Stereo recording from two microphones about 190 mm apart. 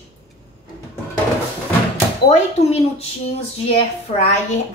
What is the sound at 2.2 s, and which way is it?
Speech, 35° left (ahead or behind).